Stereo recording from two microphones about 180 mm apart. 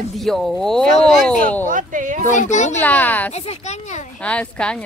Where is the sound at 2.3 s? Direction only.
40° left (ahead or behind).